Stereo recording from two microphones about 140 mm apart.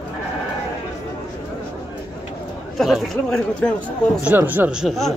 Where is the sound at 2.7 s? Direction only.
Centre (ahead or behind).